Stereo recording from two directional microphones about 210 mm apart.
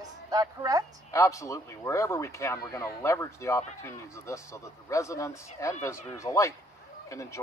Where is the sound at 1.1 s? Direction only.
15° left (ahead or behind).